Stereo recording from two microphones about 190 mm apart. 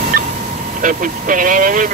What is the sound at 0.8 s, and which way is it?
Speech, 45° right (ahead or behind).